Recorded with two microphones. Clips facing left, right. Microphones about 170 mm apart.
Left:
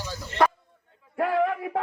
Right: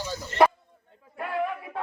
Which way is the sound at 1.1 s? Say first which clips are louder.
Left 6 dB; 80° left.